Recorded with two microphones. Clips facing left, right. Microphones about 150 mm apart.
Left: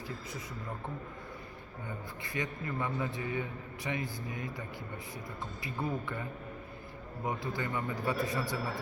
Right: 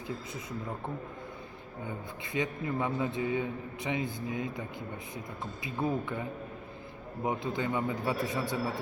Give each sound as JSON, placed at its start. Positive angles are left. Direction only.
{"t": 2.2, "sound": "a man's voice", "side_deg": -20}
{"t": 5.6, "sound": "a man's voice", "side_deg": -20}
{"t": 7.3, "sound": "a man's voice", "side_deg": -20}